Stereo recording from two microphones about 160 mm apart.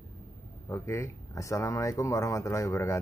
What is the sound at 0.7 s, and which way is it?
Speech, 15° left (ahead or behind).